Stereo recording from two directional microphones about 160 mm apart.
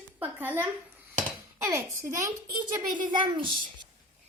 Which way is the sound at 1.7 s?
15° right (ahead or behind).